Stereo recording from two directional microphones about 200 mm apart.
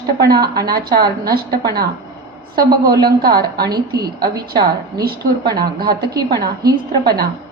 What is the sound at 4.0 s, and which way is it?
Speech, 20° right (ahead or behind).